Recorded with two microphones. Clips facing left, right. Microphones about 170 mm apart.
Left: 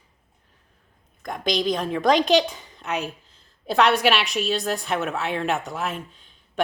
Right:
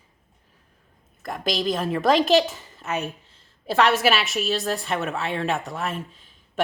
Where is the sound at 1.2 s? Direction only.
5° right (ahead or behind).